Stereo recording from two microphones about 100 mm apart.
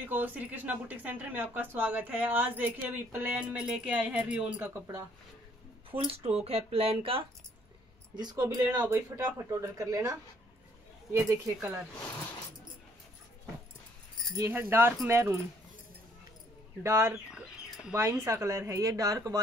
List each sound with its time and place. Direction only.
0.1 s speech: 15° right (ahead or behind)
5.9 s speech: 70° right (ahead or behind)
8.2 s speech: 45° right (ahead or behind)
8.8 s speech: 20° right (ahead or behind)
14.5 s speech: 25° right (ahead or behind)
16.8 s speech: 30° right (ahead or behind)
17.3 s bird: 5° right (ahead or behind)
18.2 s speech: 30° right (ahead or behind)